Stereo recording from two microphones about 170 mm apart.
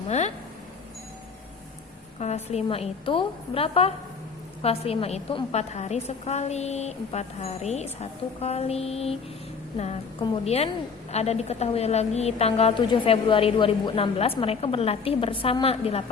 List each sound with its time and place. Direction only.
2.1 s a woman's voice: 40° left (ahead or behind)